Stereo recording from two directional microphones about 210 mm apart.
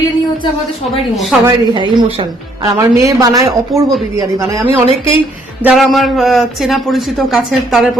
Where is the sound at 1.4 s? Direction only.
20° right (ahead or behind).